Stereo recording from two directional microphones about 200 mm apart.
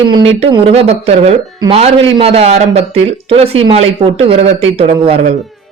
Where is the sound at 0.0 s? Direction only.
25° right (ahead or behind).